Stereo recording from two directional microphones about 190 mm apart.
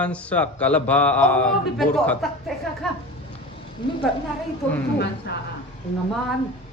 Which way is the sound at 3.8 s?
25° left (ahead or behind).